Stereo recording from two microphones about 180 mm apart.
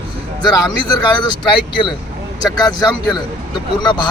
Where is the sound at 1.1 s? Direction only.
25° left (ahead or behind).